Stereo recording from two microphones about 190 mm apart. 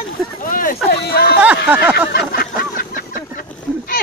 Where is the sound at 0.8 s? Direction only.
55° left (ahead or behind).